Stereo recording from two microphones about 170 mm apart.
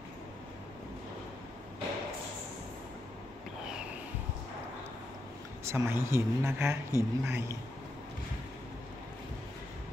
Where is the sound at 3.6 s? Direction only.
5° right (ahead or behind).